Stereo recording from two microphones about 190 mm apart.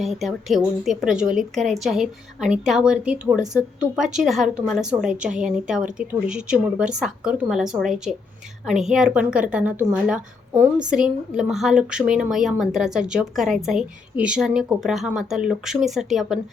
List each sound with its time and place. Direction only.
0.0 s a woman's voice: centre (ahead or behind)